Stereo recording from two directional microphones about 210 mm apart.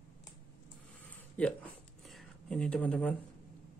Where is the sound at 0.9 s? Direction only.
5° left (ahead or behind).